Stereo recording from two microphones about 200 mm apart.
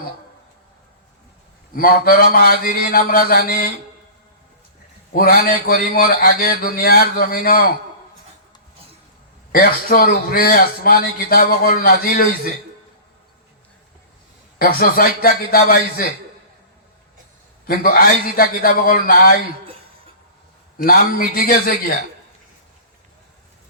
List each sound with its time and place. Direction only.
1.7 s a man's voice: 45° left (ahead or behind)
5.1 s a man's voice: 50° left (ahead or behind)
9.5 s a man's voice: 45° left (ahead or behind)
14.6 s a man's voice: 45° left (ahead or behind)
17.7 s a man's voice: 45° left (ahead or behind)
20.7 s a man's voice: 45° left (ahead or behind)